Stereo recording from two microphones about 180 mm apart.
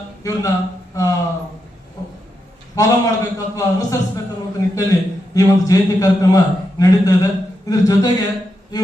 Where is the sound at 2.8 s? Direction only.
20° left (ahead or behind).